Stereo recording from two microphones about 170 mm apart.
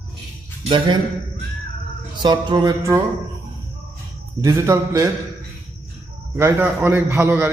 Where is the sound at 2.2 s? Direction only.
25° right (ahead or behind).